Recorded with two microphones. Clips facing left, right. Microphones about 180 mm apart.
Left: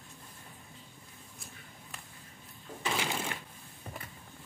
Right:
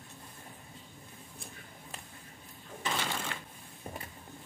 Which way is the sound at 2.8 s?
10° left (ahead or behind).